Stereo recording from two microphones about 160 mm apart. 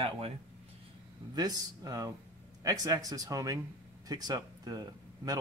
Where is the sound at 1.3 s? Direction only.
25° right (ahead or behind).